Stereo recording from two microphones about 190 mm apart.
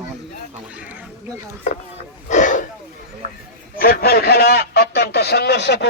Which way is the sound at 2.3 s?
40° left (ahead or behind).